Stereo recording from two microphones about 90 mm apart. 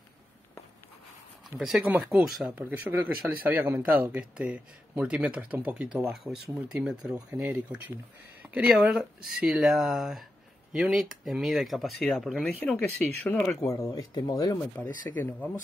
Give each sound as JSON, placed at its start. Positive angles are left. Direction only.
{"t": 2.0, "sound": "speech", "side_deg": -10}
{"t": 6.1, "sound": "speech", "side_deg": -5}
{"t": 7.2, "sound": "speech", "side_deg": -15}
{"t": 8.4, "sound": "a sound", "side_deg": -15}
{"t": 8.8, "sound": "speech", "side_deg": -5}
{"t": 12.5, "sound": "speech", "side_deg": 20}
{"t": 13.7, "sound": "speech", "side_deg": 40}
{"t": 14.8, "sound": "speech", "side_deg": 20}